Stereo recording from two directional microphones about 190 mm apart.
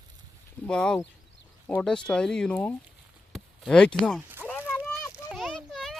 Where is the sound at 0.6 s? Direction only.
5° left (ahead or behind).